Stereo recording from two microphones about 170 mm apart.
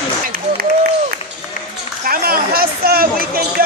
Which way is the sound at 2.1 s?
60° right (ahead or behind).